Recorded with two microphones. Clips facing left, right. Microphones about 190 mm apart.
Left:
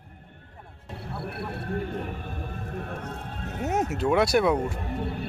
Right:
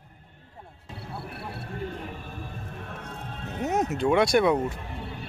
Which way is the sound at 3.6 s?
10° left (ahead or behind).